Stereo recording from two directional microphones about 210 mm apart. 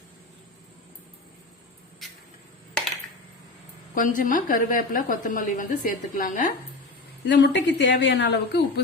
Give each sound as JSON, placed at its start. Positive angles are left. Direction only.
{"t": 3.9, "sound": "a woman's voice", "side_deg": 40}
{"t": 7.3, "sound": "a woman's voice", "side_deg": 55}